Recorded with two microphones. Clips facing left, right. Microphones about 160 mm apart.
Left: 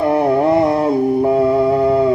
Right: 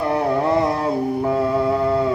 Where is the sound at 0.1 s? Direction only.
25° left (ahead or behind).